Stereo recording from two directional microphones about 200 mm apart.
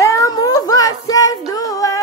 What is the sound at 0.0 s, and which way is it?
Child singing, 15° left (ahead or behind).